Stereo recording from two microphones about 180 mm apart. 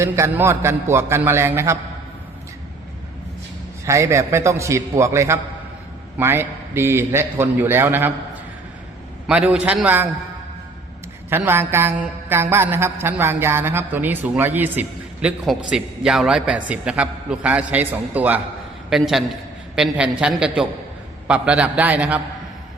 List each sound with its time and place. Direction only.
0.0 s a man's voice: 15° right (ahead or behind)
3.8 s a man's voice: 15° right (ahead or behind)
9.2 s a man's voice: 5° right (ahead or behind)
11.3 s a man's voice: 10° right (ahead or behind)